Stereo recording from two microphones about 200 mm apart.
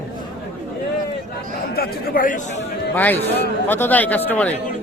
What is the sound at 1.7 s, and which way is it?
Speech, 50° left (ahead or behind).